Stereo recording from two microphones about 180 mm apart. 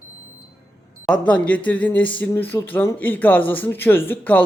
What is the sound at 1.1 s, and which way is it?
Speech, 5° left (ahead or behind).